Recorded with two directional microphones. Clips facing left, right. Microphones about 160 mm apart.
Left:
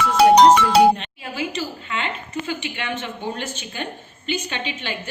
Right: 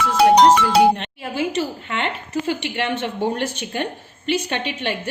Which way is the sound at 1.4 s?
60° right (ahead or behind).